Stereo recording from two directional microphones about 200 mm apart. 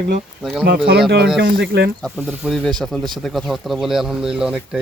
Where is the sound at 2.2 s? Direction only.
Centre (ahead or behind).